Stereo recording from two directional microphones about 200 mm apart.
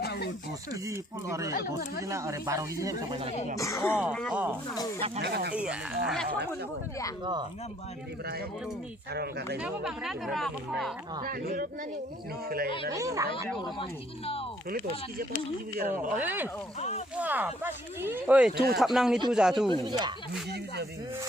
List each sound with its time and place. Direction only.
0.0 s a sound: 55° left (ahead or behind)
0.7 s speech: 15° right (ahead or behind)
3.6 s speech: 15° left (ahead or behind)
3.9 s speech: centre (ahead or behind)
4.9 s speech: 30° right (ahead or behind)
5.2 s speech: 55° right (ahead or behind)
5.5 s speech: 5° right (ahead or behind)
9.1 s speech: 50° right (ahead or behind)
9.6 s speech: 5° right (ahead or behind)
11.2 s speech: 50° right (ahead or behind)
12.9 s speech: 15° right (ahead or behind)
15.8 s speech: 40° right (ahead or behind)
16.1 s speech: 10° right (ahead or behind)
19.7 s speech: 20° right (ahead or behind)